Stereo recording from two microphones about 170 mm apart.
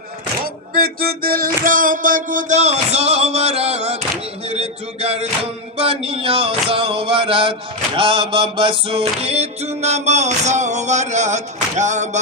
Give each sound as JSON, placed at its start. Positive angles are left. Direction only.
{"t": 0.4, "sound": "music", "side_deg": -60}